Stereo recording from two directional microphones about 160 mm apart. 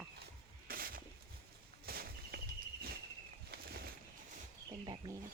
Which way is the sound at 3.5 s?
75° right (ahead or behind).